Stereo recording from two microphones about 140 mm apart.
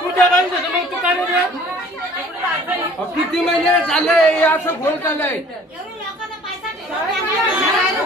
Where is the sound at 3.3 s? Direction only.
5° left (ahead or behind).